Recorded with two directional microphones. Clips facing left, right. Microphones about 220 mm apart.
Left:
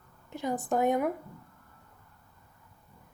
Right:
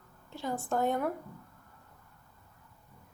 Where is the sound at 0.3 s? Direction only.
20° left (ahead or behind).